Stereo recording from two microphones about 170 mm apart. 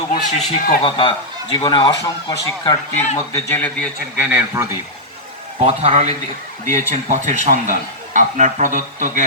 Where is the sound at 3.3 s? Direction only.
10° left (ahead or behind).